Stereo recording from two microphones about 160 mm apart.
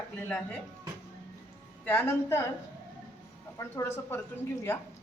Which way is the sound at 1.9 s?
15° left (ahead or behind).